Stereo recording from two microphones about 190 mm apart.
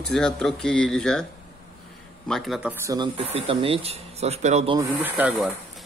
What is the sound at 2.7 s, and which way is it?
Speech, 15° right (ahead or behind).